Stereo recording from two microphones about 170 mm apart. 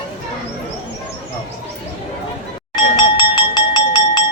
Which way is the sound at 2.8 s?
30° left (ahead or behind).